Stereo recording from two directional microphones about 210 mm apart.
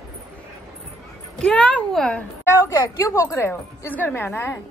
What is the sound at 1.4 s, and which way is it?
Speech, 5° left (ahead or behind).